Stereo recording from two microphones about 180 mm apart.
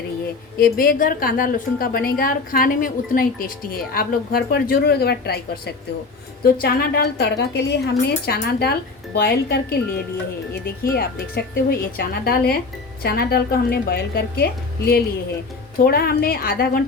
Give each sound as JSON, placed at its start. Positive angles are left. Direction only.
{"t": 0.5, "sound": "a woman's voice", "side_deg": 55}
{"t": 10.9, "sound": "a woman's voice", "side_deg": 60}